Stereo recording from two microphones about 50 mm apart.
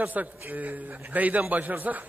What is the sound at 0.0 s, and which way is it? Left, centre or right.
A man's voice, right.